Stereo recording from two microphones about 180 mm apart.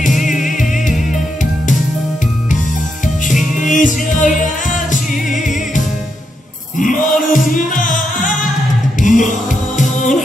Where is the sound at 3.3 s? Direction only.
45° left (ahead or behind).